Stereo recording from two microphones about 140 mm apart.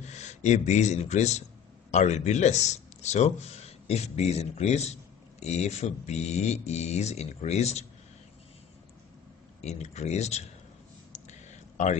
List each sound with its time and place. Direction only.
0.1 s speech: 55° left (ahead or behind)
9.6 s speech: 50° left (ahead or behind)
11.2 s a sound: 60° left (ahead or behind)